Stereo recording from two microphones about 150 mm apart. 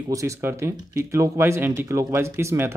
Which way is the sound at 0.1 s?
20° right (ahead or behind).